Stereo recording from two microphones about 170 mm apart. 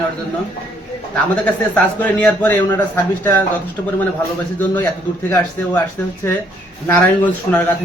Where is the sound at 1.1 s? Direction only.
10° left (ahead or behind).